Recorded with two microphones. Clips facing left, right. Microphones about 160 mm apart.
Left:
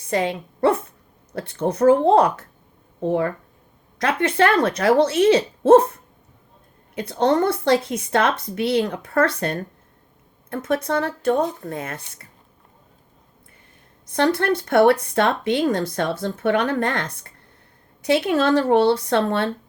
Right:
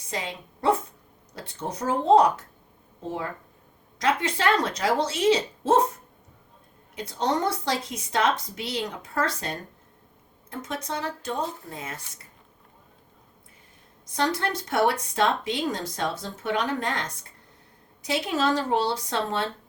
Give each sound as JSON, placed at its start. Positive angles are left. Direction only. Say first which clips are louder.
{"t": 0.1, "sound": "speech", "louder": "left 11 dB", "side_deg": 60}
{"t": 6.9, "sound": "speech", "louder": "left 7 dB", "side_deg": 60}
{"t": 14.1, "sound": "speech", "louder": "left 7 dB", "side_deg": 60}